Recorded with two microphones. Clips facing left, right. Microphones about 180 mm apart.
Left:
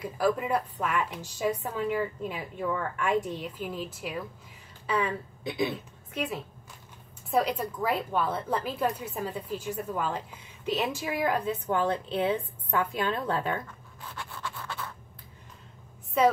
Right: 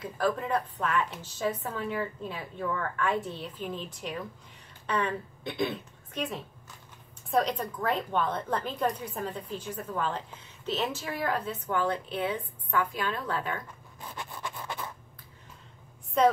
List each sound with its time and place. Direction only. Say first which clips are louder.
0.0 s a woman's voice: left 2 dB; 10° left (ahead or behind)
11.6 s a woman's voice: left 2 dB; 25° left (ahead or behind)
14.0 s a sound: even; 15° right (ahead or behind)
16.2 s a woman's voice: even; 5° left (ahead or behind)